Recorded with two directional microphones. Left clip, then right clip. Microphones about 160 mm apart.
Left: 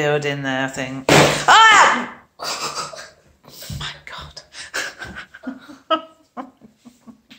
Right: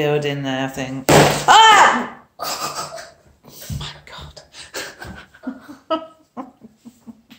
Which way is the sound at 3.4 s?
20° right (ahead or behind).